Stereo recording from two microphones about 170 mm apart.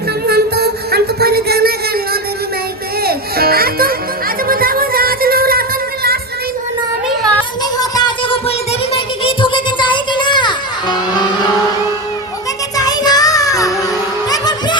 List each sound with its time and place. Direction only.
0.3 s music: 65° right (ahead or behind)
3.0 s music: 65° right (ahead or behind)
7.8 s a sound: 25° left (ahead or behind)
12.7 s child singing: 20° left (ahead or behind)
14.3 s music: 25° left (ahead or behind)